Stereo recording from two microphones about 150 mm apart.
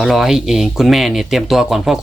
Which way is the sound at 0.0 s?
Centre (ahead or behind).